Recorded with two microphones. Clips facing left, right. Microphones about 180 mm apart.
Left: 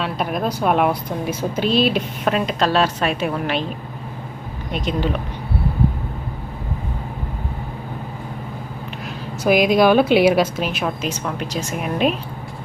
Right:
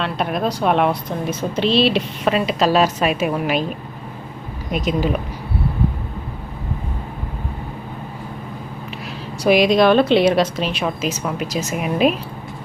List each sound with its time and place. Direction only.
0.0 s speech: centre (ahead or behind)
4.7 s speech: 5° right (ahead or behind)
9.4 s speech: 5° left (ahead or behind)